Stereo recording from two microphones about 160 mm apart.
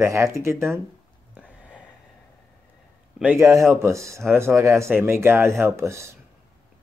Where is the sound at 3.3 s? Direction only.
15° right (ahead or behind).